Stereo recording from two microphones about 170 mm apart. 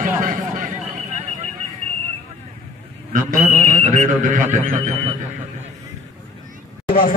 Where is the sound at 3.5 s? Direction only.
40° right (ahead or behind).